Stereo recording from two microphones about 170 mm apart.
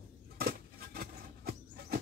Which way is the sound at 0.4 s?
60° right (ahead or behind).